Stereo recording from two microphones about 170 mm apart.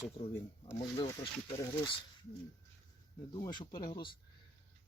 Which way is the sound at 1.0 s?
35° left (ahead or behind).